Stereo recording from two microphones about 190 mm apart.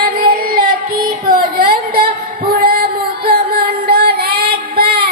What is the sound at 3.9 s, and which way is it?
Child singing, 55° right (ahead or behind).